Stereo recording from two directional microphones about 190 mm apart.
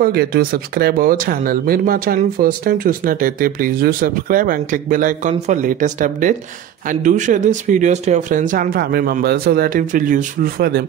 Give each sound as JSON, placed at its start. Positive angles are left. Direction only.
{"t": 0.0, "sound": "speech", "side_deg": -55}